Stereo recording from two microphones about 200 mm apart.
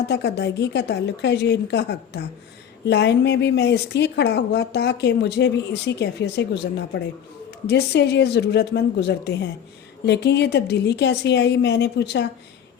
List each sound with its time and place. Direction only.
0.1 s a woman's voice: 55° left (ahead or behind)